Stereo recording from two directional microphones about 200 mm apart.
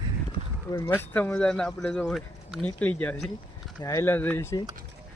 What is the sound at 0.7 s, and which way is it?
Speech, 10° left (ahead or behind).